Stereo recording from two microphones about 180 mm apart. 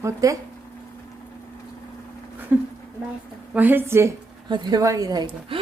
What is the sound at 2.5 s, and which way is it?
A woman's voice, 10° right (ahead or behind).